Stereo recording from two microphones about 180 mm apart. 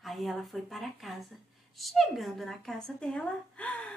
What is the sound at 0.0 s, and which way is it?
A woman's voice, centre (ahead or behind).